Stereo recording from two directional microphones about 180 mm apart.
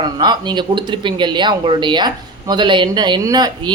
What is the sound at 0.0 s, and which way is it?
Speech, 25° right (ahead or behind).